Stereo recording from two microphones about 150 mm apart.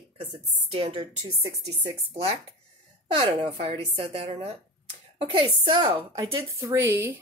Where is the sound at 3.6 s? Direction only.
40° right (ahead or behind).